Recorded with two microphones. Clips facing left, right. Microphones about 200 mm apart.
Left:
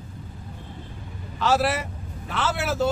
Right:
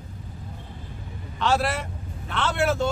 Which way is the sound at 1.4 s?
5° left (ahead or behind).